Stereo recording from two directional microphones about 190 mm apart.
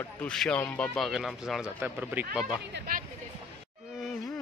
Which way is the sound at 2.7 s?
50° right (ahead or behind).